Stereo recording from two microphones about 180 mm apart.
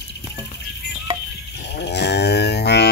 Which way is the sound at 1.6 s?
70° left (ahead or behind).